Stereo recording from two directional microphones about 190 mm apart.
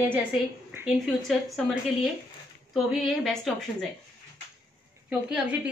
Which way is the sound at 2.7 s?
Centre (ahead or behind).